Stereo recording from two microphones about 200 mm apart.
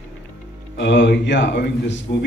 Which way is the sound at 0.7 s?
60° left (ahead or behind).